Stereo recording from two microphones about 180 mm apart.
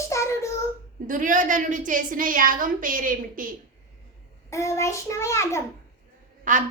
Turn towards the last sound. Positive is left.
turn(degrees=-45)  # may be behind; listen again after turning